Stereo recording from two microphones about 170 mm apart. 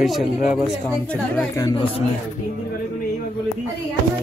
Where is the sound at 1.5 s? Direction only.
25° left (ahead or behind).